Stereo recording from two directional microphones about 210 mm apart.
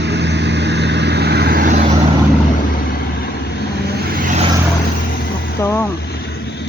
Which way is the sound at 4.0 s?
40° right (ahead or behind).